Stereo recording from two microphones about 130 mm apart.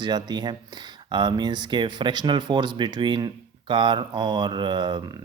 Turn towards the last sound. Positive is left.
turn(degrees=-35)  # may be behind; listen again after turning